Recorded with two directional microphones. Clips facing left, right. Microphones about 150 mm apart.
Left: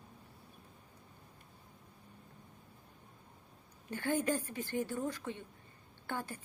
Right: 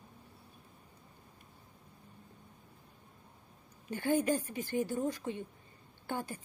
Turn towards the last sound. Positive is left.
turn(degrees=-15)  # may be behind; listen again after turning